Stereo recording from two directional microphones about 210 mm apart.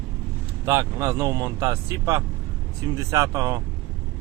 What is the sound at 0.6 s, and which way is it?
Speech, 10° right (ahead or behind).